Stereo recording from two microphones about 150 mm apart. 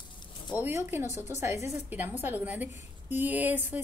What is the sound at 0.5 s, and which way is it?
A woman's voice, 15° right (ahead or behind).